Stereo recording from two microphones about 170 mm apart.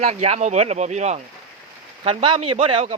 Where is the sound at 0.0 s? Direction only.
40° right (ahead or behind).